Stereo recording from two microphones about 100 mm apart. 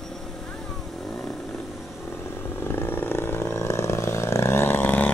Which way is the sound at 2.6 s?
20° left (ahead or behind).